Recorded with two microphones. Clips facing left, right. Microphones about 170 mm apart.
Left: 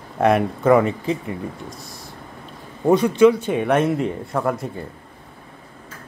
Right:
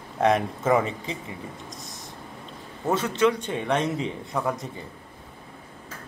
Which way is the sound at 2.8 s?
15° left (ahead or behind).